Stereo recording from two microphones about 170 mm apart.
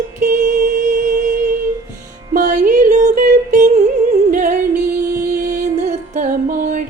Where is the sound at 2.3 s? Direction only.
50° right (ahead or behind).